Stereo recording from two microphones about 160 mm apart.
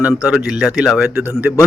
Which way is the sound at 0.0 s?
5° right (ahead or behind).